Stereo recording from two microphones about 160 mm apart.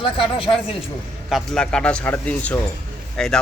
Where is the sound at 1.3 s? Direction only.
5° left (ahead or behind).